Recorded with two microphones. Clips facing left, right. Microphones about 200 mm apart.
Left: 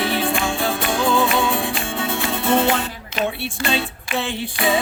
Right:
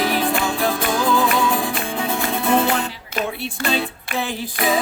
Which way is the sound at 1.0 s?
30° left (ahead or behind).